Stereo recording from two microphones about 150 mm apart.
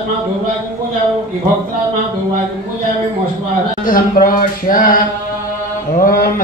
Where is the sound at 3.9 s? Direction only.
70° left (ahead or behind).